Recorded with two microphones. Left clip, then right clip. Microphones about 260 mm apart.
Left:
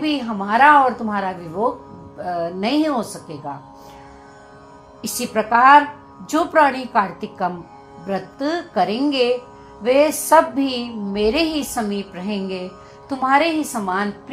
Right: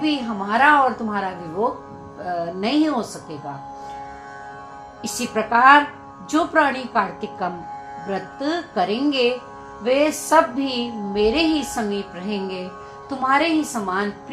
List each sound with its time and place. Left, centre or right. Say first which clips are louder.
0.0 s speech: left 1 dB; left
5.0 s speech: left 2 dB; left